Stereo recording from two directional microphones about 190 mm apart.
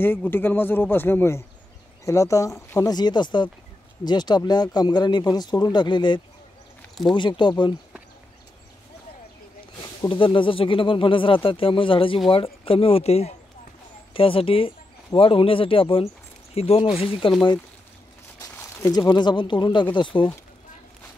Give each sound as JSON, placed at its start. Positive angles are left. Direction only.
{"t": 0.0, "sound": "speech", "side_deg": 10}
{"t": 10.0, "sound": "speech", "side_deg": 25}
{"t": 18.4, "sound": "speech", "side_deg": 10}